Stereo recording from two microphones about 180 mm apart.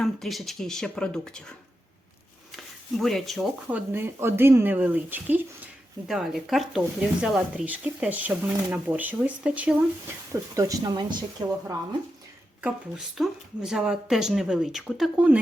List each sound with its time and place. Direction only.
0.0 s speech: centre (ahead or behind)
3.0 s speech: centre (ahead or behind)
10.5 s speech: 20° right (ahead or behind)
12.6 s speech: 5° right (ahead or behind)